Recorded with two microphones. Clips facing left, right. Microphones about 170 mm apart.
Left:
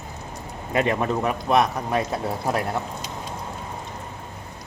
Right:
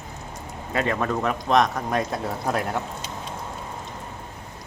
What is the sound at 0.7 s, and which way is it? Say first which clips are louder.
Speech: left 2 dB; 20° left (ahead or behind).